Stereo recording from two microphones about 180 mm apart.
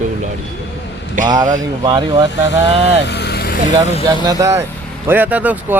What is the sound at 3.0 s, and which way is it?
Vehicle, 65° left (ahead or behind).